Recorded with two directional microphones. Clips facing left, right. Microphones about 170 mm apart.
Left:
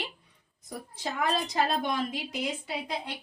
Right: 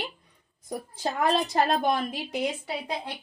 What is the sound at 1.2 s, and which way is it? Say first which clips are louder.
Speech: right 5 dB; 55° right (ahead or behind).